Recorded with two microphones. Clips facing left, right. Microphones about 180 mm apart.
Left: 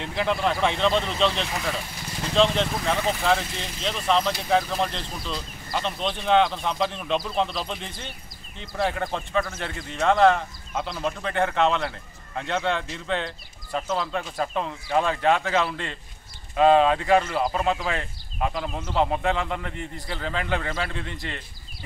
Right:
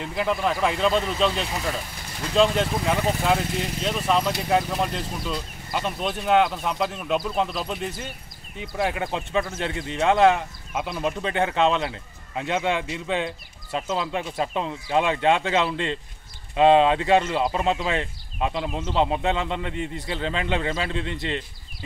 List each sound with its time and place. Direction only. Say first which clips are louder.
0.0 s speech: even; 5° right (ahead or behind)
9.3 s speech: right 2 dB; 20° right (ahead or behind)
10.0 s speech: even; 10° right (ahead or behind)